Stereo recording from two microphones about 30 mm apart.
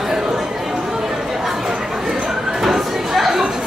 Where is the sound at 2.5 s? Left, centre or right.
Centre.